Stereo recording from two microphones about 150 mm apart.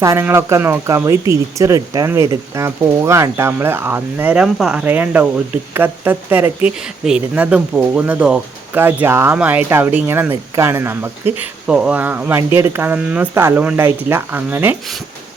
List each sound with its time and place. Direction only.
0.0 s speech: 20° right (ahead or behind)